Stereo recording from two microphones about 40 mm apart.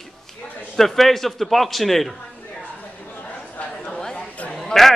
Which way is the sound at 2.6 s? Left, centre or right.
Left.